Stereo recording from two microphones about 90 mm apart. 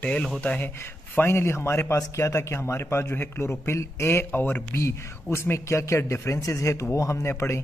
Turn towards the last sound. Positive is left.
turn(degrees=30)  # may be behind; listen again after turning